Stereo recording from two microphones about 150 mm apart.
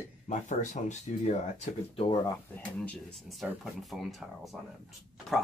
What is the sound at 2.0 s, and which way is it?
Speech, 30° left (ahead or behind).